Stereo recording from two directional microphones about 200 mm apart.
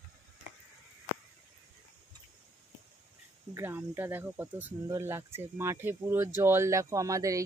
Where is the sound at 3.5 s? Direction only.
10° right (ahead or behind).